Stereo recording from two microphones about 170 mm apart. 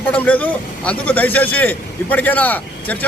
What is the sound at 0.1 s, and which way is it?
A man's voice, 10° left (ahead or behind).